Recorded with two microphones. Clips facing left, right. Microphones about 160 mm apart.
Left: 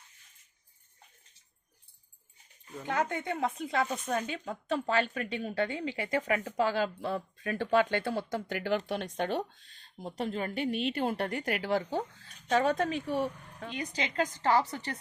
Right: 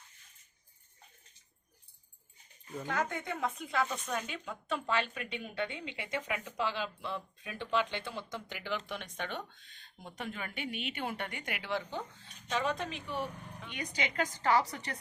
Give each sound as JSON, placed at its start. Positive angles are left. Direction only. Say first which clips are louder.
{"t": 2.8, "sound": "speech", "louder": "left 4 dB", "side_deg": 25}